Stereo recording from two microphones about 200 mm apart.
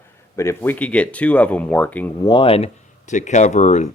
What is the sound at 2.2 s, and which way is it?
Speech, 25° left (ahead or behind).